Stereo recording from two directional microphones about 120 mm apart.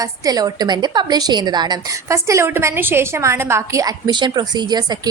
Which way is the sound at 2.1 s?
25° right (ahead or behind).